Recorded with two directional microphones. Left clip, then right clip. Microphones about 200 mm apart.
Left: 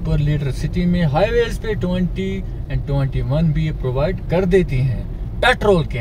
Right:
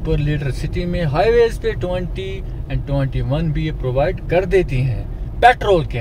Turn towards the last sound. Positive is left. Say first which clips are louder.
# right 3 dB
turn(degrees=-55)  # may be behind; listen again after turning